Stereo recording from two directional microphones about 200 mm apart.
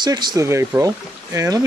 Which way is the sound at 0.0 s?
20° right (ahead or behind).